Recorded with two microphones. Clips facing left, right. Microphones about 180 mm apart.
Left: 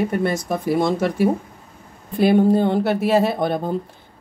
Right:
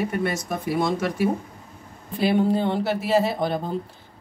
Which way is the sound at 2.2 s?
50° left (ahead or behind).